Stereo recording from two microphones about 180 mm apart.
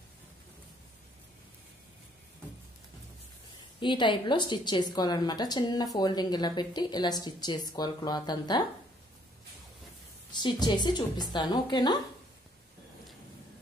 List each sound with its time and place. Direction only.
3.8 s a woman's voice: 25° left (ahead or behind)
10.3 s a woman's voice: 25° left (ahead or behind)